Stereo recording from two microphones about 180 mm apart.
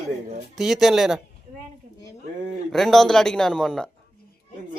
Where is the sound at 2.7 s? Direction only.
Centre (ahead or behind).